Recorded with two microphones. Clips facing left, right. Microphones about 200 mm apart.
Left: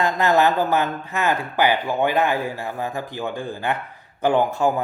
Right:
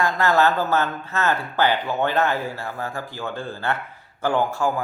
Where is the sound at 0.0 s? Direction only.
20° left (ahead or behind).